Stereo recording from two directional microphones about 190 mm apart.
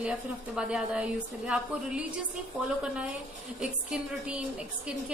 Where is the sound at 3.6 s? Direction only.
5° right (ahead or behind).